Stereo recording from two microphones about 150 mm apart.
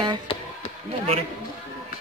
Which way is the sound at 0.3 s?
35° left (ahead or behind).